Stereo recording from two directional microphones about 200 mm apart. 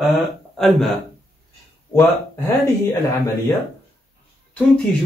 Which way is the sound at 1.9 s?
10° left (ahead or behind).